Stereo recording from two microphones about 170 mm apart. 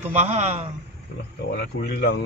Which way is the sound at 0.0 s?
45° right (ahead or behind).